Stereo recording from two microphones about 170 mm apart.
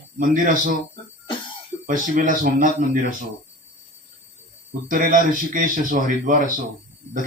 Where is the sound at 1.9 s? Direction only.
55° right (ahead or behind).